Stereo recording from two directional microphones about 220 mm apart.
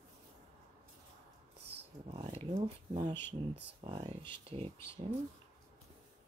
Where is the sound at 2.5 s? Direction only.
20° right (ahead or behind).